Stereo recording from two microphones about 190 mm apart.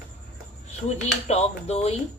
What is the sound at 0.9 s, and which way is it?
Speech, 35° left (ahead or behind).